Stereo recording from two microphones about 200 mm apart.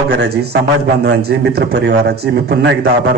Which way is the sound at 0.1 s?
55° right (ahead or behind).